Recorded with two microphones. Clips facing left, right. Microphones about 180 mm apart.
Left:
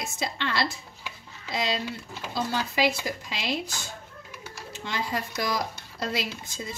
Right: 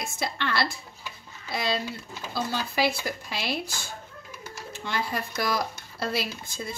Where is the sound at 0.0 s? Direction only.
20° left (ahead or behind).